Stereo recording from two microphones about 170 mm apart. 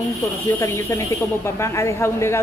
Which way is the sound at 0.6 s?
15° left (ahead or behind).